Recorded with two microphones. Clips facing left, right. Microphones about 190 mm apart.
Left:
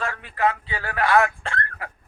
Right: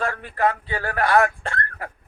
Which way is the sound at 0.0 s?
45° right (ahead or behind).